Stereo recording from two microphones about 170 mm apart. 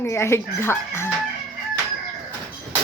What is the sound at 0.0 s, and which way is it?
Speech, 15° left (ahead or behind).